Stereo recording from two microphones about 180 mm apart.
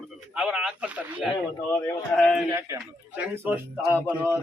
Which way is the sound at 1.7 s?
10° left (ahead or behind).